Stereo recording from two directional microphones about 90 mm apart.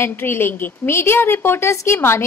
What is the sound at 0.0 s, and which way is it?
A woman's voice, 25° left (ahead or behind).